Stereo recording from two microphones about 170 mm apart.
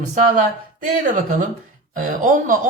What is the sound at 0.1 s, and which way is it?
Speech, 50° right (ahead or behind).